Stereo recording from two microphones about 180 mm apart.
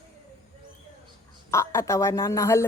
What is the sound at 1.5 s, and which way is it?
Speech, 15° left (ahead or behind).